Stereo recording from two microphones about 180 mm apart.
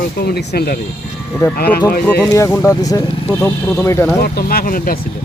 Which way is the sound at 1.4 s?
15° left (ahead or behind).